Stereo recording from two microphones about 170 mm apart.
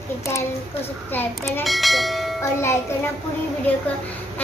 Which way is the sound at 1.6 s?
Centre (ahead or behind).